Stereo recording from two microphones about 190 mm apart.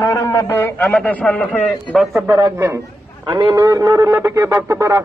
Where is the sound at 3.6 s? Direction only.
20° right (ahead or behind).